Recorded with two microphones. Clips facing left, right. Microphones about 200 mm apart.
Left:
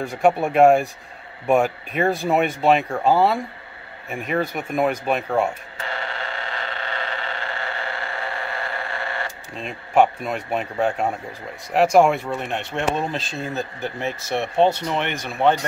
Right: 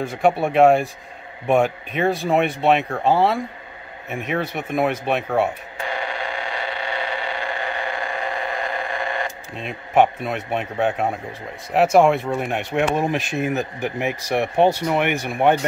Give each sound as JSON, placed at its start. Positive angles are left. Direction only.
{"t": 0.0, "sound": "speech", "side_deg": 0}
{"t": 5.8, "sound": "a sound", "side_deg": -15}
{"t": 9.6, "sound": "speech", "side_deg": 0}
{"t": 12.3, "sound": "speech", "side_deg": -10}